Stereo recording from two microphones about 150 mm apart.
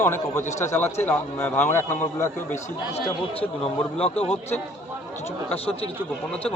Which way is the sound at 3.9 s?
45° left (ahead or behind).